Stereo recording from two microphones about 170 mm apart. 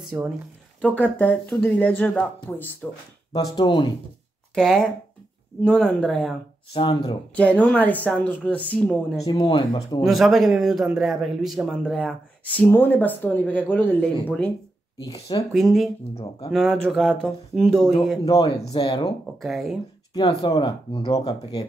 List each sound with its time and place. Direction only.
0.1 s speech: 10° right (ahead or behind)
0.7 s speech: 10° left (ahead or behind)
3.3 s speech: 30° left (ahead or behind)
4.6 s a man's voice: centre (ahead or behind)
6.7 s speech: 30° left (ahead or behind)
7.6 s speech: 10° left (ahead or behind)
9.2 s speech: 30° left (ahead or behind)
10.0 s a man's voice: centre (ahead or behind)
15.0 s speech: 30° left (ahead or behind)
15.5 s a man's voice: centre (ahead or behind)
18.7 s speech: 25° left (ahead or behind)
19.4 s a man's voice: centre (ahead or behind)
20.2 s speech: 25° left (ahead or behind)